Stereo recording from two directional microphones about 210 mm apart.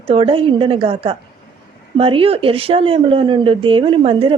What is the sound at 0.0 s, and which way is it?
Speech, 25° right (ahead or behind).